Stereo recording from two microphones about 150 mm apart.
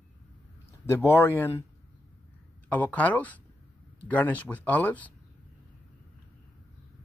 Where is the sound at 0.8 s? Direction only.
15° left (ahead or behind).